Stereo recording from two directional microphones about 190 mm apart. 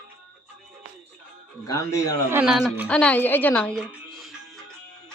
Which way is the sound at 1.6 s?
20° left (ahead or behind).